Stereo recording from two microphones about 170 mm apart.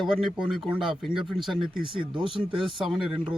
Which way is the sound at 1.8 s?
30° right (ahead or behind).